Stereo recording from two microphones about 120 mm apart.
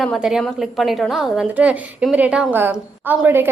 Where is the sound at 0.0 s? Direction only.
Centre (ahead or behind).